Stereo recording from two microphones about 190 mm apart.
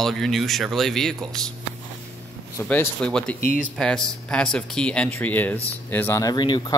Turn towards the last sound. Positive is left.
turn(degrees=25)  # may be behind; listen again after turning